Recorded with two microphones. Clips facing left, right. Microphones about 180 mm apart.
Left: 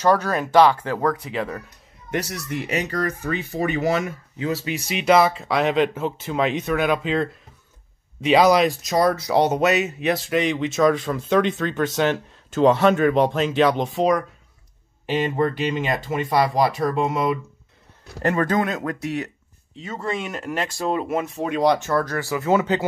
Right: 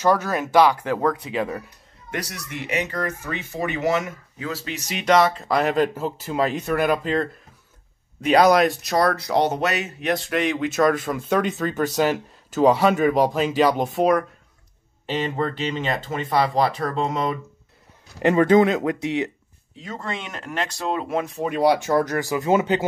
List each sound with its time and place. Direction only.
0.0 s speech: 10° right (ahead or behind)
2.2 s speech: 35° left (ahead or behind)
4.6 s speech: 10° left (ahead or behind)
15.0 s speech: 10° left (ahead or behind)
18.2 s speech: 20° right (ahead or behind)
19.8 s speech: 5° left (ahead or behind); by 22.8 s 20° right (ahead or behind)